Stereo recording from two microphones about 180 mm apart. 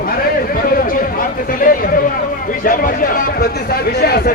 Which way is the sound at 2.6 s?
50° left (ahead or behind).